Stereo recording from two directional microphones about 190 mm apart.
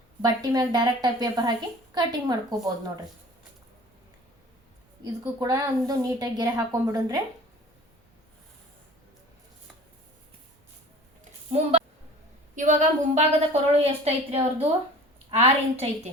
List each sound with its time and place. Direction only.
0.2 s a woman's voice: 20° right (ahead or behind)
5.2 s a woman's voice: 15° right (ahead or behind)
11.5 s a woman's voice: 30° right (ahead or behind)